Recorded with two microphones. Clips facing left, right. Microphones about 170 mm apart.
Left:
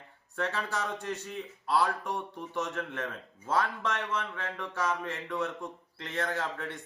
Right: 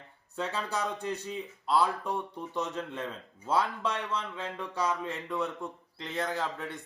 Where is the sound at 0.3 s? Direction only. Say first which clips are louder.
Left 1 dB; 15° right (ahead or behind).